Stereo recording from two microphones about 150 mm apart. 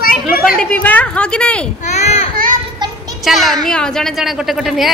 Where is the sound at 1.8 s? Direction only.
45° left (ahead or behind).